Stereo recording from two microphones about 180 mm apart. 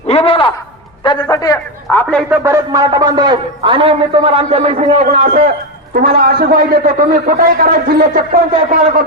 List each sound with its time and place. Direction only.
0.1 s a sound: 30° left (ahead or behind)
1.0 s a man's voice: 25° left (ahead or behind)
1.9 s speech: 10° left (ahead or behind)
2.3 s a man's voice: 15° right (ahead or behind); by 5.4 s 35° right (ahead or behind)
5.9 s a man's voice: 55° right (ahead or behind)